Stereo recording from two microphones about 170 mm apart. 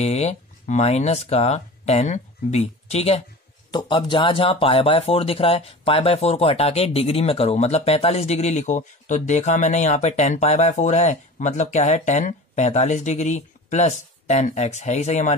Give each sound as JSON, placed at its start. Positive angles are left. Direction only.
{"t": 0.0, "sound": "speech", "side_deg": 40}